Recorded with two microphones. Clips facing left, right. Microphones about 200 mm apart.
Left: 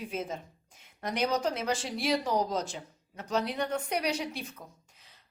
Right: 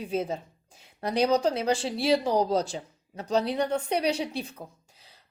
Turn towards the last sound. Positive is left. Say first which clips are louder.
# right 5 dB
turn(degrees=-35)  # may be behind; listen again after turning